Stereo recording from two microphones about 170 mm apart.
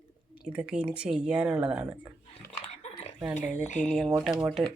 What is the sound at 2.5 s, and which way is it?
Dog, 40° left (ahead or behind).